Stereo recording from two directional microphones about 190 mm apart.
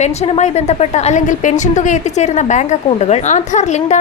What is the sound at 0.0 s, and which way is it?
A woman's voice, 35° left (ahead or behind).